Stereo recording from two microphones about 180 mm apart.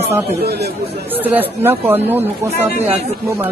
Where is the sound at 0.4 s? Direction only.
60° right (ahead or behind).